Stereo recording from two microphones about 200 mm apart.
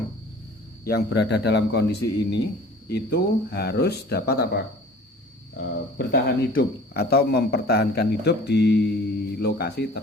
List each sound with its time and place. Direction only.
0.9 s a man's voice: 55° left (ahead or behind)